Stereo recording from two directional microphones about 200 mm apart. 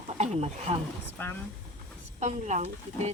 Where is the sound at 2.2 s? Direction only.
35° right (ahead or behind).